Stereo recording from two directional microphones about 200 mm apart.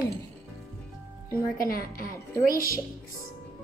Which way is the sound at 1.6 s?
45° left (ahead or behind).